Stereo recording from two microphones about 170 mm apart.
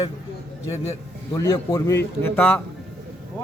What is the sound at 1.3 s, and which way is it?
A man's voice, 20° left (ahead or behind).